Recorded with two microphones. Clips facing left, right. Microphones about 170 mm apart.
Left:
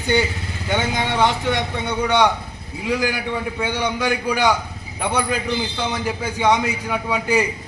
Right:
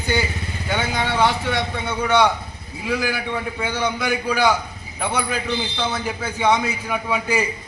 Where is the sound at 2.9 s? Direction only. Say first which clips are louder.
Left 1 dB; 15° left (ahead or behind).